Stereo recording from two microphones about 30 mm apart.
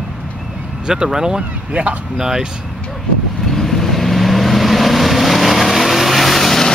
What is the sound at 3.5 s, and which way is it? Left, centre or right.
Vehicle, centre.